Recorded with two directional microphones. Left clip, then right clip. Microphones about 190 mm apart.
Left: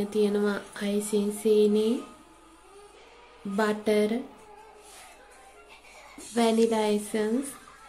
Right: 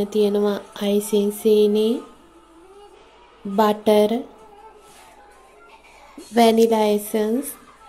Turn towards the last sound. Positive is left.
turn(degrees=-20)  # may be behind; listen again after turning